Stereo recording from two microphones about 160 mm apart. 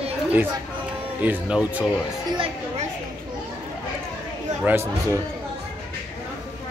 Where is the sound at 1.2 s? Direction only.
10° right (ahead or behind).